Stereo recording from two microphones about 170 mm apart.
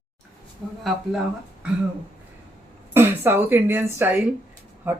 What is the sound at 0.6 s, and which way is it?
Speech, centre (ahead or behind).